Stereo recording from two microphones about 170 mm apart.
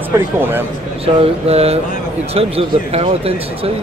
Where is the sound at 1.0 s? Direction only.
35° right (ahead or behind).